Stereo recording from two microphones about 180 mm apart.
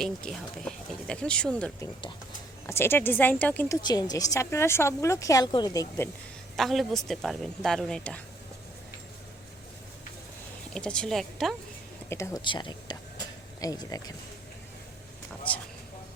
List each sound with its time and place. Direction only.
0.0 s speech: 5° left (ahead or behind)
3.8 s a woman's voice: 20° left (ahead or behind)
6.6 s speech: centre (ahead or behind)
10.8 s speech: 5° left (ahead or behind)
12.0 s a sound: 15° left (ahead or behind)